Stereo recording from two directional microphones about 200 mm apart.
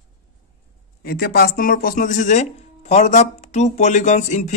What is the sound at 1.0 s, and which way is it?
Speech, 50° left (ahead or behind).